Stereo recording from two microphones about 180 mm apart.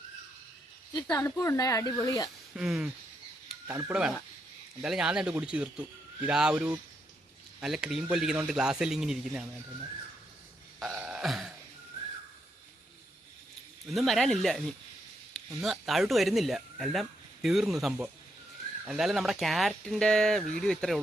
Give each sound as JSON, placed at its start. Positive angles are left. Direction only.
{"t": 1.1, "sound": "speech", "side_deg": 20}
{"t": 2.6, "sound": "speech", "side_deg": -5}
{"t": 10.8, "sound": "burping", "side_deg": -5}
{"t": 13.8, "sound": "speech", "side_deg": 0}